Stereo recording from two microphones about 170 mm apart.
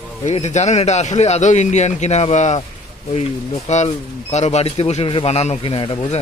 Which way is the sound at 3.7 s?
40° left (ahead or behind).